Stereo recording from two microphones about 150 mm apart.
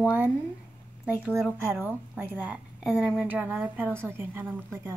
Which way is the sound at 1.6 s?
10° right (ahead or behind).